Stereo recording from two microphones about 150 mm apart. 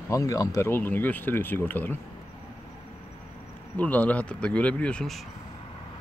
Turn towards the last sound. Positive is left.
turn(degrees=5)  # may be behind; listen again after turning